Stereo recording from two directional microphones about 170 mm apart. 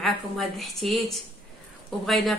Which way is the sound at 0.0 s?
Centre (ahead or behind).